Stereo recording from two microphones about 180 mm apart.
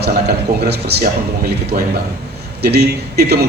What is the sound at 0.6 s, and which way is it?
Speech, 65° right (ahead or behind).